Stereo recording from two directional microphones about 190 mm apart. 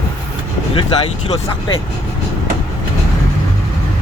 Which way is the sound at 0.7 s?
30° left (ahead or behind).